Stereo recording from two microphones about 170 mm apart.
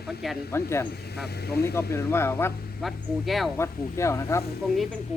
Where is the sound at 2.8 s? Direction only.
Centre (ahead or behind).